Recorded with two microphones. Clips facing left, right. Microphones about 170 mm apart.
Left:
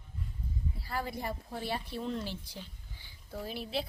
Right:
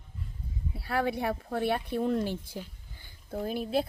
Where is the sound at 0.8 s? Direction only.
65° right (ahead or behind).